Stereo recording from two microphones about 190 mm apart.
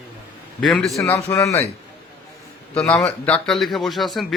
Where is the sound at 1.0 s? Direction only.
15° left (ahead or behind).